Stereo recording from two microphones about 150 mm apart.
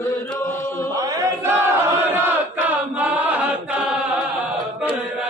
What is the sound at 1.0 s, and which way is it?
Chant, 15° right (ahead or behind).